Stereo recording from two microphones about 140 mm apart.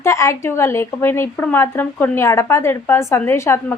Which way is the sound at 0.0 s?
20° left (ahead or behind).